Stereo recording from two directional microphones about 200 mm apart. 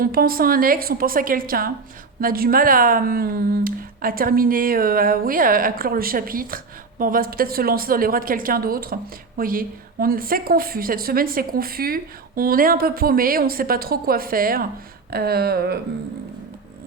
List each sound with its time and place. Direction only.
0.0 s speech: 45° right (ahead or behind)